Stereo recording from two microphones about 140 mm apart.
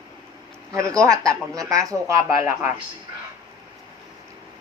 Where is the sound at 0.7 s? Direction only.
20° right (ahead or behind).